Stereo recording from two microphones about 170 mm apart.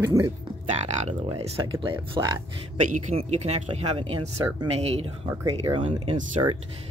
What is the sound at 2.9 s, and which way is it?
Speech, 45° right (ahead or behind).